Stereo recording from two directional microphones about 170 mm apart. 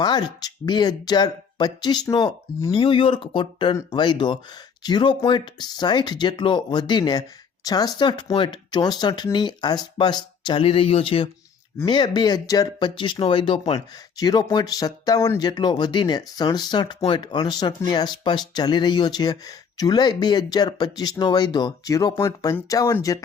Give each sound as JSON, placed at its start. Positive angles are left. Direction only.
{"t": 0.0, "sound": "speech", "side_deg": 25}